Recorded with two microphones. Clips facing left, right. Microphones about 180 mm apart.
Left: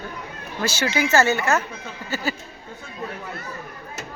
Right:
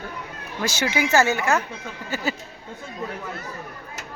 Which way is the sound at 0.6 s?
15° right (ahead or behind).